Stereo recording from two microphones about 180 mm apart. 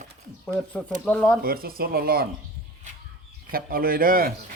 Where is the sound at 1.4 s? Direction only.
55° right (ahead or behind).